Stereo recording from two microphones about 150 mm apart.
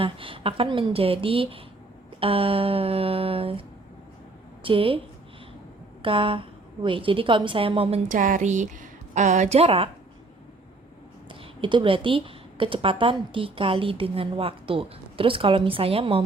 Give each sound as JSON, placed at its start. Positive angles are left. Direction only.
{"t": 0.0, "sound": "a woman's voice", "side_deg": -35}
{"t": 4.6, "sound": "a woman's voice", "side_deg": -35}
{"t": 6.0, "sound": "a woman's voice", "side_deg": -35}
{"t": 8.1, "sound": "a woman's voice", "side_deg": -60}
{"t": 11.6, "sound": "a woman's voice", "side_deg": -35}